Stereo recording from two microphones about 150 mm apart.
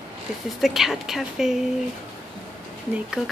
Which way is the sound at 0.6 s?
Centre (ahead or behind).